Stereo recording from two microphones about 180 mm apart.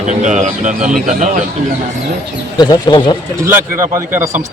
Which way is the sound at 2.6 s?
25° left (ahead or behind).